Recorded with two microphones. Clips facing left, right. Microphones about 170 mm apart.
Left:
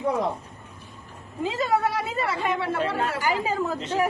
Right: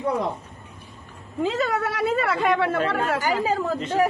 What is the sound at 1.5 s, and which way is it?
Speech, 70° right (ahead or behind).